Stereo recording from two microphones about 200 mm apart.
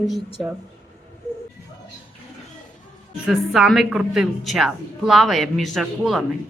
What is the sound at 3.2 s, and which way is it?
A woman's voice, centre (ahead or behind).